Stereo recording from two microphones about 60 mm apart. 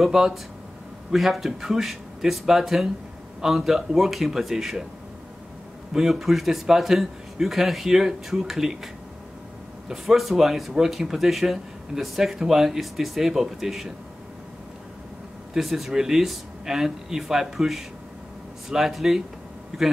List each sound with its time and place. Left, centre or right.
0.0 s speech: centre
5.9 s speech: centre
15.5 s speech: centre